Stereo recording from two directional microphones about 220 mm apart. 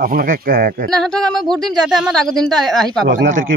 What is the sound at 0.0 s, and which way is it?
Speech, 40° right (ahead or behind).